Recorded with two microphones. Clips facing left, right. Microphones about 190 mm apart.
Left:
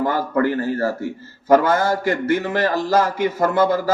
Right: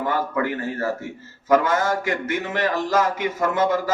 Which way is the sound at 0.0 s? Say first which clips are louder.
Left 4 dB; 40° left (ahead or behind).